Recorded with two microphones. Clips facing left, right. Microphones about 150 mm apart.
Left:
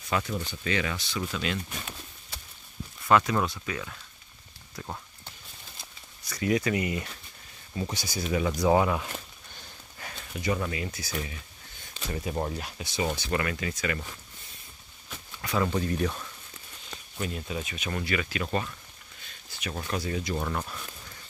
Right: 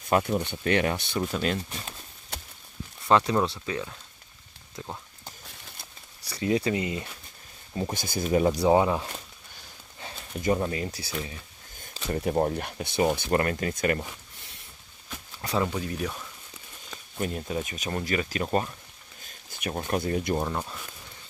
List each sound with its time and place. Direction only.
0.1 s speech: 50° right (ahead or behind)
1.3 s speech: 40° right (ahead or behind)
3.1 s speech: 30° right (ahead or behind)
6.2 s speech: 30° right (ahead or behind)
7.9 s speech: 50° right (ahead or behind)
8.6 s speech: 25° right (ahead or behind)
10.6 s speech: 35° right (ahead or behind)
12.1 s speech: 45° right (ahead or behind)
15.6 s speech: 5° right (ahead or behind)
17.2 s speech: 40° right (ahead or behind)
19.2 s a sound: 50° right (ahead or behind)
19.9 s speech: 50° right (ahead or behind)
20.3 s speech: 20° right (ahead or behind)